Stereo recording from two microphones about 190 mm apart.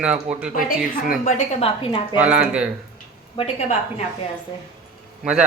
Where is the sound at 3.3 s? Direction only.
35° left (ahead or behind).